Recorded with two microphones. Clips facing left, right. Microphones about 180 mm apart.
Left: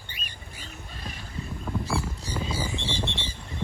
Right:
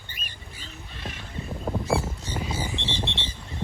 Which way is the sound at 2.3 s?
20° right (ahead or behind).